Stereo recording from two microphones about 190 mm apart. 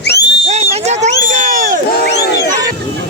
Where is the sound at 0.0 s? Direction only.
60° left (ahead or behind).